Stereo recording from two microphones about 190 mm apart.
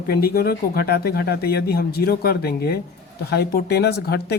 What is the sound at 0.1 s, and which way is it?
Speech, 55° left (ahead or behind).